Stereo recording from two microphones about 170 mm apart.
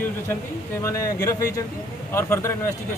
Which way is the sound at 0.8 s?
20° left (ahead or behind).